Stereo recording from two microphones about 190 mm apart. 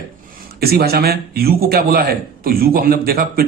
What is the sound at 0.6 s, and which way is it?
A man's voice, 55° right (ahead or behind).